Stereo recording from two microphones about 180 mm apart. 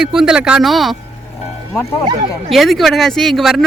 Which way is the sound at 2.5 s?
Centre (ahead or behind).